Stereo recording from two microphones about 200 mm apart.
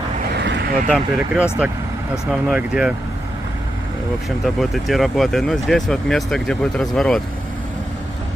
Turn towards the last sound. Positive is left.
turn(degrees=0)  # may be behind; listen again after turning